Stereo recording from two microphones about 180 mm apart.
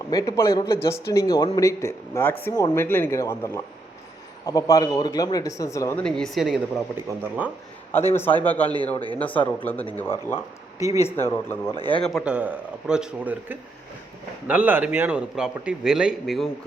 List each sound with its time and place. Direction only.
0.1 s a man's voice: 20° left (ahead or behind)
6.0 s a man's voice: 5° left (ahead or behind)
7.9 s a man's voice: 10° left (ahead or behind)
10.8 s speech: 15° right (ahead or behind)
11.0 s a man's voice: 15° left (ahead or behind)
12.0 s a man's voice: 5° right (ahead or behind)